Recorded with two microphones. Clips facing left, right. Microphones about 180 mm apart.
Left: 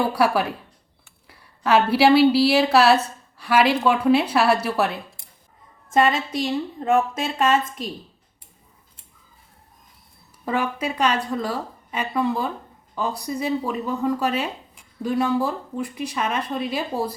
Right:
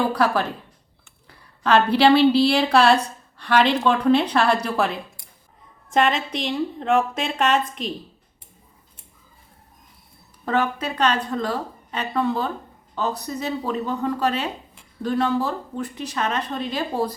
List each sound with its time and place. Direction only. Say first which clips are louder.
0.0 s a woman's voice: left 1 dB; 10° left (ahead or behind)
10.4 s a woman's voice: right 1 dB; 10° left (ahead or behind)